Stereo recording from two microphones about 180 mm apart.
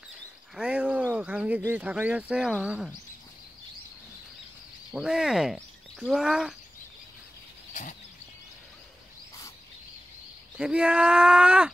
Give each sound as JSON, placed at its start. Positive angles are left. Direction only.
{"t": 0.6, "sound": "a sound", "side_deg": -5}
{"t": 1.7, "sound": "speech", "side_deg": -10}
{"t": 4.9, "sound": "speech", "side_deg": -5}
{"t": 10.6, "sound": "speech", "side_deg": -5}